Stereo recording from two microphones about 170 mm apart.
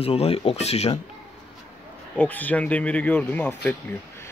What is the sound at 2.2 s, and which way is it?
Speech, 10° left (ahead or behind).